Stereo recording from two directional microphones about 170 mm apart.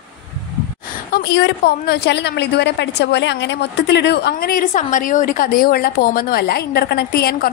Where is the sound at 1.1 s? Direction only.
70° left (ahead or behind).